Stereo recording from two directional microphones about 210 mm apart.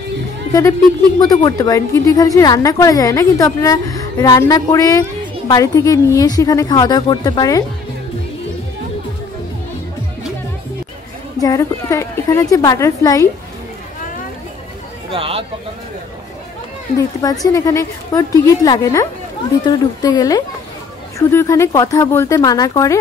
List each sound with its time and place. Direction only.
0.5 s a woman's voice: 15° left (ahead or behind)
11.3 s a woman's voice: 15° left (ahead or behind)
15.0 s speech: 25° right (ahead or behind)
17.2 s a woman's voice: 15° left (ahead or behind)